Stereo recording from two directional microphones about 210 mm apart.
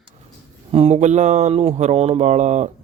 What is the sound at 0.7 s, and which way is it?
Speech, 30° right (ahead or behind).